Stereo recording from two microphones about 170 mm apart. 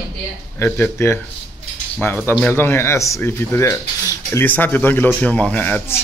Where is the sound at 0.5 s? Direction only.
15° left (ahead or behind).